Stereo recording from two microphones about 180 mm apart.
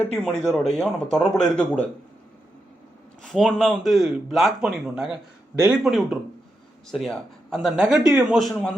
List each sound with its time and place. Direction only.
0.0 s speech: 5° left (ahead or behind)
3.3 s speech: centre (ahead or behind)